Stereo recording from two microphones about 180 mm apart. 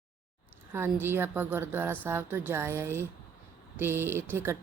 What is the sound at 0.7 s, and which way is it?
Speech, 15° right (ahead or behind).